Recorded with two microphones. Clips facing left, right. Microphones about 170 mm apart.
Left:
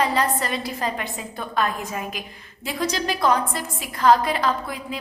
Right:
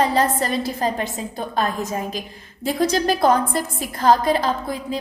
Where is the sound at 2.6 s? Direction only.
45° right (ahead or behind).